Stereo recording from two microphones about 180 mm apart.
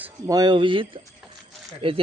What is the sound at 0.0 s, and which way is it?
A man's voice, 20° right (ahead or behind).